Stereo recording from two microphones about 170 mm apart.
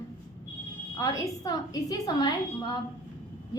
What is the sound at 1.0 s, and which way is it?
A woman's voice, 20° left (ahead or behind).